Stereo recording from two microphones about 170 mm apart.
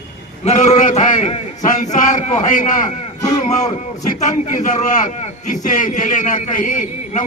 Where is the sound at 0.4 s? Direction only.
40° left (ahead or behind).